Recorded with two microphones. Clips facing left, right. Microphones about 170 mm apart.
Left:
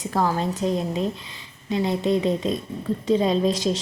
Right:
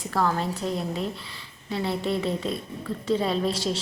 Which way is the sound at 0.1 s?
15° left (ahead or behind).